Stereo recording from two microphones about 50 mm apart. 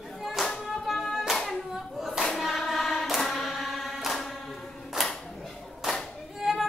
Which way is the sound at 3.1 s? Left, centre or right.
Centre.